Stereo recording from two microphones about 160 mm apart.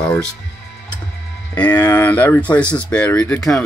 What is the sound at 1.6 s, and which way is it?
Speech, 25° left (ahead or behind).